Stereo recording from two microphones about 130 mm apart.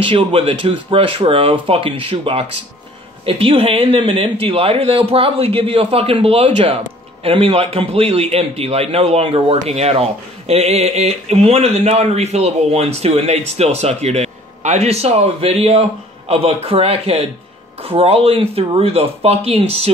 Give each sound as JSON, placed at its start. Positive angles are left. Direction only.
{"t": 0.0, "sound": "speech", "side_deg": -40}